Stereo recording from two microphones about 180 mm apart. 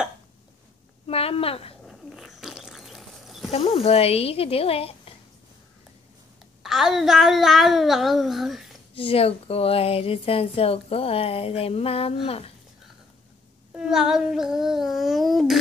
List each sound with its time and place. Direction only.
1.0 s a sound: 35° left (ahead or behind)
1.9 s a sound: centre (ahead or behind)
3.5 s speech: 35° left (ahead or behind)
6.6 s speech: centre (ahead or behind)
8.9 s speech: 30° left (ahead or behind)
13.7 s speech: 5° right (ahead or behind)